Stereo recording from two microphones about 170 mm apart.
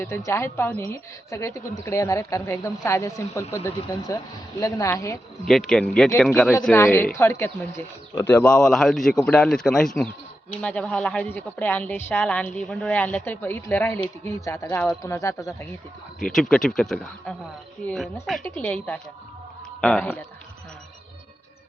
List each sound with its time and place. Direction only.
0.3 s a woman's voice: 15° left (ahead or behind)
5.5 s speech: 5° left (ahead or behind)
6.7 s a woman's voice: 15° left (ahead or behind)
16.2 s a woman's voice: 5° left (ahead or behind)